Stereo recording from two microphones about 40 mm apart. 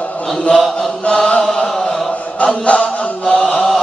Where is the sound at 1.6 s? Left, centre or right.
Centre.